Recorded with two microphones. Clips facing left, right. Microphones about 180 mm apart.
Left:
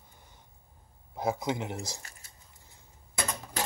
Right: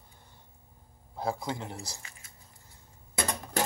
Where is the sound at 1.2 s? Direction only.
20° left (ahead or behind).